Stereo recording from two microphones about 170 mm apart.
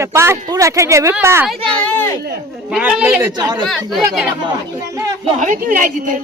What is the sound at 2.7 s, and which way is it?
Speech, 5° right (ahead or behind).